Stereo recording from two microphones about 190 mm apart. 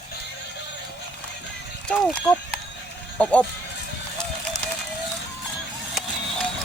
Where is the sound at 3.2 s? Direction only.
5° left (ahead or behind).